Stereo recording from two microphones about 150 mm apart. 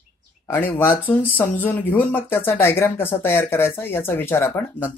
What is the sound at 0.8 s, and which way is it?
Speech, 15° left (ahead or behind).